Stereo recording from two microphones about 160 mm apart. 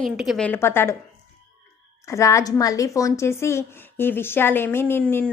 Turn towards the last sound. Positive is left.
turn(degrees=10)  # may be behind; listen again after turning